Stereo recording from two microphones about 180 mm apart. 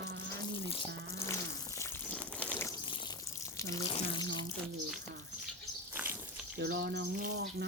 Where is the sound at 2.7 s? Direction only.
25° left (ahead or behind).